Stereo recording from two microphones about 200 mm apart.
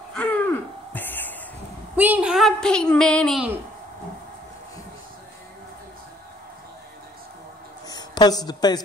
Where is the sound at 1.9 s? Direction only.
10° right (ahead or behind).